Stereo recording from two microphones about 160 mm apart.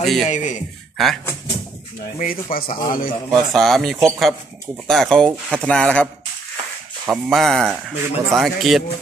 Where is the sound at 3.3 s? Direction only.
Centre (ahead or behind).